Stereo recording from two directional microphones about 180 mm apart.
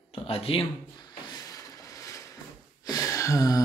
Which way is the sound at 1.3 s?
20° left (ahead or behind).